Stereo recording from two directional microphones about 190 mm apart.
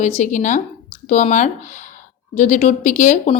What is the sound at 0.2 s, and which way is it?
A woman's voice, 40° left (ahead or behind).